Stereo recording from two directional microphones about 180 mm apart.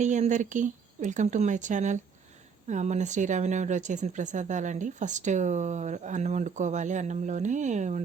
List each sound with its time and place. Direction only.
0.0 s speech: 40° right (ahead or behind)